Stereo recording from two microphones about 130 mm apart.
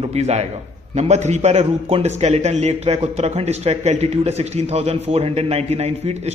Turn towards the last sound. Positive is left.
turn(degrees=-55)  # may be behind; listen again after turning